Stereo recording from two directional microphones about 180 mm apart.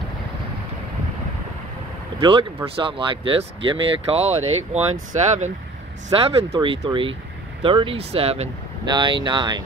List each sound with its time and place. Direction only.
2.1 s speech: 30° right (ahead or behind)
6.0 s speech: 30° right (ahead or behind)